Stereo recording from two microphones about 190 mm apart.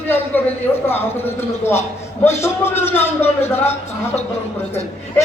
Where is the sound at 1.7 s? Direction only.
15° left (ahead or behind).